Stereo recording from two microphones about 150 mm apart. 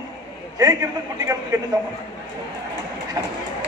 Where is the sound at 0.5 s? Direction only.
20° right (ahead or behind).